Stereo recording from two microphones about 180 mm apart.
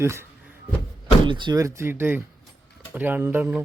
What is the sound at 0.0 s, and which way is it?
Speech, 15° right (ahead or behind).